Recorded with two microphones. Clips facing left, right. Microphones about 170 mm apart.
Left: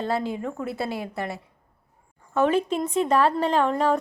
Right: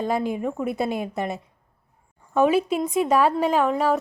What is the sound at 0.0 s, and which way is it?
A woman's voice, 15° right (ahead or behind).